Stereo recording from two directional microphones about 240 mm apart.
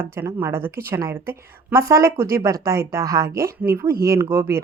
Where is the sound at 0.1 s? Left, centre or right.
Centre.